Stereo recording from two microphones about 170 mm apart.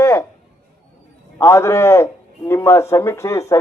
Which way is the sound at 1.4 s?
15° left (ahead or behind).